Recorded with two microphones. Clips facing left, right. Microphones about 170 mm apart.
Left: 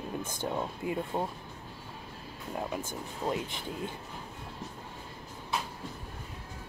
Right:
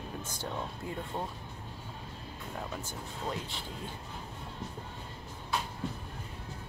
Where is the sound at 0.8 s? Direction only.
15° left (ahead or behind).